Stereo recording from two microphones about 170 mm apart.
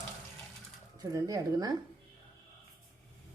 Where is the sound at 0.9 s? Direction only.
20° right (ahead or behind).